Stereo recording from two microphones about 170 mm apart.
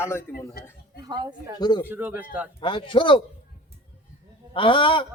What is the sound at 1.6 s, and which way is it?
Speech, 25° left (ahead or behind).